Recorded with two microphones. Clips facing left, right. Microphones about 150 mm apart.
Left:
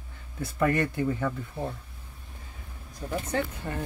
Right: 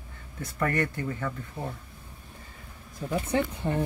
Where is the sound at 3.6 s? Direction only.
15° right (ahead or behind).